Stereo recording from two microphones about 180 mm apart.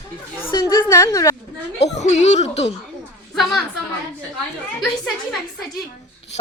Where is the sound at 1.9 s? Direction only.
40° left (ahead or behind).